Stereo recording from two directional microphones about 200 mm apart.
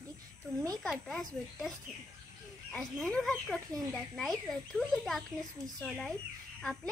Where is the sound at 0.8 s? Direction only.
Centre (ahead or behind).